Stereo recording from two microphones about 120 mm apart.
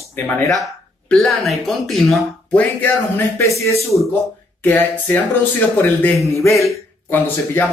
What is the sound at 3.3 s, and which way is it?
A man's voice, 25° left (ahead or behind).